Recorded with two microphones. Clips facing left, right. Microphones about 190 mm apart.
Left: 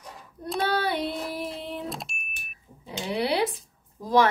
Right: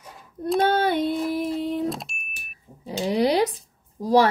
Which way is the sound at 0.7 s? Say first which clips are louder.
Right 3 dB; 45° right (ahead or behind).